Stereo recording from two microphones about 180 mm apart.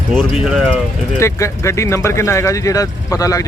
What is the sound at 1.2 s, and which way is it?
Speech, 15° left (ahead or behind).